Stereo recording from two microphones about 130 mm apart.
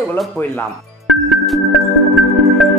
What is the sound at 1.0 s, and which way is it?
Music, centre (ahead or behind).